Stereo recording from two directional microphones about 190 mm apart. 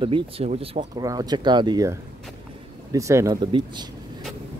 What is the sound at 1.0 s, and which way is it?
Speech, 20° right (ahead or behind).